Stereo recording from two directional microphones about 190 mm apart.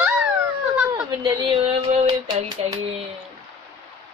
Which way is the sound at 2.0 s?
25° right (ahead or behind).